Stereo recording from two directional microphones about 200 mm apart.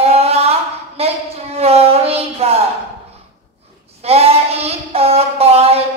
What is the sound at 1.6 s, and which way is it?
A child's voice, 30° right (ahead or behind).